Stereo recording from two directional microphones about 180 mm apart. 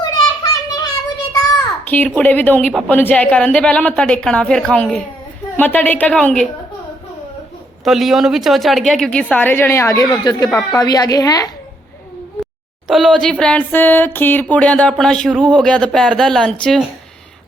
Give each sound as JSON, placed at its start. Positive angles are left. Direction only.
{"t": 0.5, "sound": "a sound", "side_deg": 20}
{"t": 1.9, "sound": "a woman's voice", "side_deg": 10}
{"t": 7.9, "sound": "a woman's voice", "side_deg": 0}
{"t": 12.9, "sound": "a woman's voice", "side_deg": 0}